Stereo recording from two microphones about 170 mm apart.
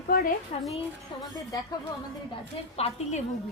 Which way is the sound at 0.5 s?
40° left (ahead or behind).